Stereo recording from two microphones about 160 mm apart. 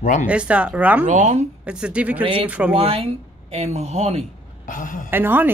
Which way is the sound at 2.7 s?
35° right (ahead or behind).